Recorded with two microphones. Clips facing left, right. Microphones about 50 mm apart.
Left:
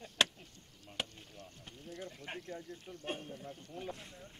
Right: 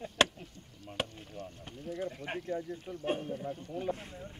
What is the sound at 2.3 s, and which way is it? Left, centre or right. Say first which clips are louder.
Speech: right 8 dB; centre.